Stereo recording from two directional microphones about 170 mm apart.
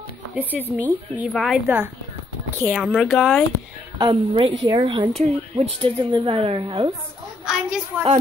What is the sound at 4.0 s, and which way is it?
A woman's voice, 25° right (ahead or behind).